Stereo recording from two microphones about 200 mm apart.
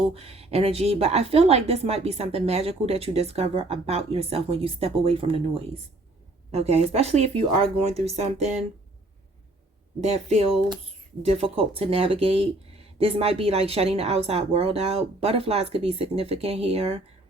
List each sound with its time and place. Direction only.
0.1 s a woman's voice: 30° right (ahead or behind)
10.0 s a woman's voice: 30° right (ahead or behind)